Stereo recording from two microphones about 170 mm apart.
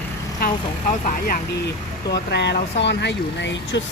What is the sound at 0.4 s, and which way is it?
Speech, 55° left (ahead or behind).